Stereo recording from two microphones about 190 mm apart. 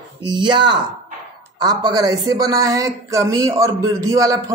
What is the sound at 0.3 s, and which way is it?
Speech, 25° right (ahead or behind).